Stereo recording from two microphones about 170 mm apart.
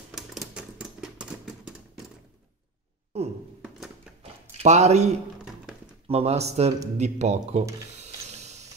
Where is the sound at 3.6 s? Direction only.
5° right (ahead or behind).